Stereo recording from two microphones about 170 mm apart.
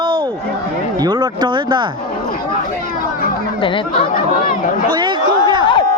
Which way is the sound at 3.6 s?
30° left (ahead or behind).